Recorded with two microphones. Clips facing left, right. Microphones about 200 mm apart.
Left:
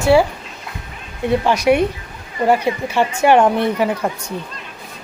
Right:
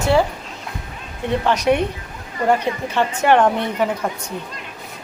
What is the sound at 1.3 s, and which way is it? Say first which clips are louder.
A woman's voice: left 3 dB; 10° left (ahead or behind).